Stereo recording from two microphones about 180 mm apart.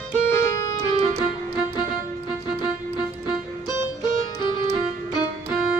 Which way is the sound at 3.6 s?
25° left (ahead or behind).